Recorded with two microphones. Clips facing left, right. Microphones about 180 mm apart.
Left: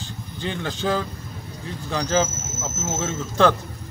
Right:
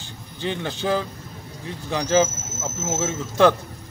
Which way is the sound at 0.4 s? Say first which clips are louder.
Right 1 dB; 20° right (ahead or behind).